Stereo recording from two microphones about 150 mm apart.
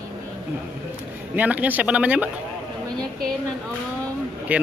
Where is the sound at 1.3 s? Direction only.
10° right (ahead or behind).